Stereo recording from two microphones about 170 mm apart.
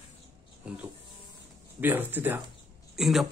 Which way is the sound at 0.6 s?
5° right (ahead or behind).